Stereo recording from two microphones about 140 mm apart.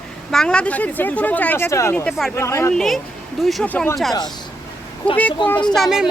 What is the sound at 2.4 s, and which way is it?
Speech, 20° left (ahead or behind).